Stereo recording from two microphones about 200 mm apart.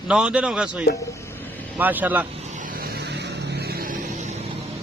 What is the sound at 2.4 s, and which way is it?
Vehicle, 40° right (ahead or behind).